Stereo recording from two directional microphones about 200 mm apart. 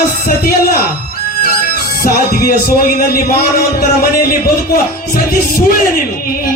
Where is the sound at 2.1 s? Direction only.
50° left (ahead or behind).